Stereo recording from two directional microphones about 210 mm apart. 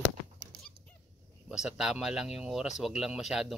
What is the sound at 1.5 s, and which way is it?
Speech, centre (ahead or behind).